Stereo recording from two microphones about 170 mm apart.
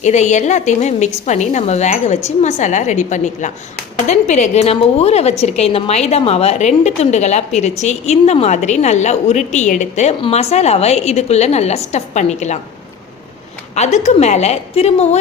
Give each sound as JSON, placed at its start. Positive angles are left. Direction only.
{"t": 0.0, "sound": "a woman's voice", "side_deg": 45}
{"t": 13.7, "sound": "a woman's voice", "side_deg": 40}